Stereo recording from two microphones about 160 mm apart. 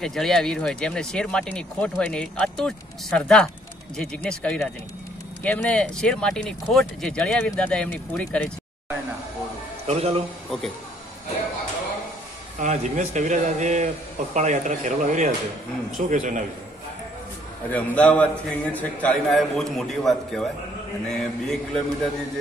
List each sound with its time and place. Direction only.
0.0 s speech: 5° left (ahead or behind)
9.8 s speech: 40° right (ahead or behind)
12.5 s speech: 50° right (ahead or behind)
17.6 s a man's voice: 10° left (ahead or behind)